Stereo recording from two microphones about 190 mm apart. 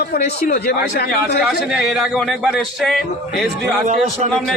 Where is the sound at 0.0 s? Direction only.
55° left (ahead or behind).